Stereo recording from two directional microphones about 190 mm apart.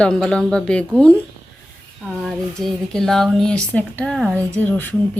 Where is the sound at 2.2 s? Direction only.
Centre (ahead or behind).